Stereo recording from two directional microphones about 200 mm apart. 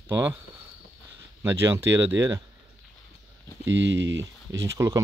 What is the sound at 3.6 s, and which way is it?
Speech, 65° right (ahead or behind).